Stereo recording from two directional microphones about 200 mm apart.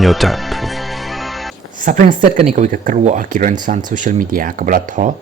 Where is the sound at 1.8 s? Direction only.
40° right (ahead or behind).